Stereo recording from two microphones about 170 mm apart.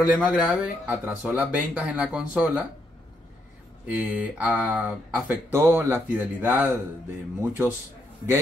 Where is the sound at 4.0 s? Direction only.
10° right (ahead or behind).